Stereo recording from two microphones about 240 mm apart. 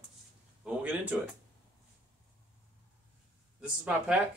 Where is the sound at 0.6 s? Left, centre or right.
Centre.